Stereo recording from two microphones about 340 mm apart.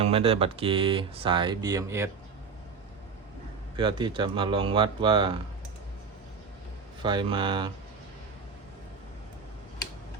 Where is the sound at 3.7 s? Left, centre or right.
Centre.